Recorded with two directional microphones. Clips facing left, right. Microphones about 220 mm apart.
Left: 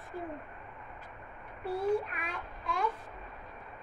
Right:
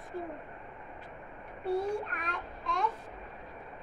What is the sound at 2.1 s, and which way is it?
Child singing, 5° left (ahead or behind).